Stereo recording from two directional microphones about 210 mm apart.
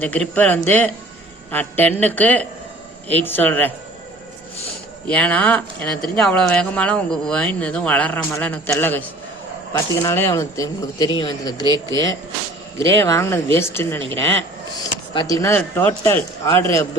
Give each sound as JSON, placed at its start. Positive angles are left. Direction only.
{"t": 0.0, "sound": "speech", "side_deg": 5}
{"t": 5.0, "sound": "speech", "side_deg": 5}
{"t": 13.0, "sound": "speech", "side_deg": 10}